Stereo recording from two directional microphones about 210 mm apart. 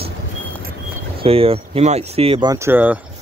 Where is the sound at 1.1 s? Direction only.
25° right (ahead or behind).